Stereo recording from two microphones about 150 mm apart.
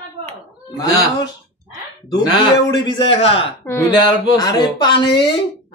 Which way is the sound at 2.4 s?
30° left (ahead or behind).